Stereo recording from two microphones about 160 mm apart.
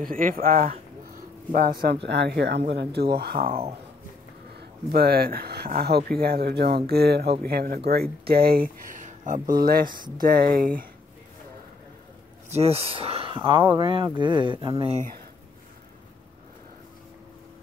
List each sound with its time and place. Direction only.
0.0 s speech: 60° right (ahead or behind)
4.6 s speech: 75° right (ahead or behind)
12.4 s speech: 40° right (ahead or behind)